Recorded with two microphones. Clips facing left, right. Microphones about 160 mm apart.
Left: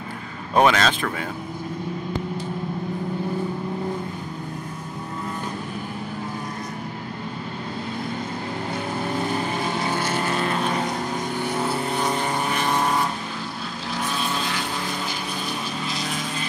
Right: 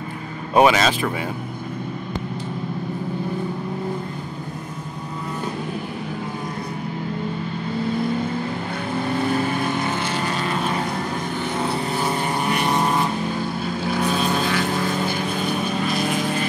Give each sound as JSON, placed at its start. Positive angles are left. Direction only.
{"t": 0.6, "sound": "speech", "side_deg": -5}
{"t": 11.7, "sound": "vehicle", "side_deg": -5}
{"t": 12.5, "sound": "vehicle", "side_deg": -15}
{"t": 13.8, "sound": "vehicle", "side_deg": -55}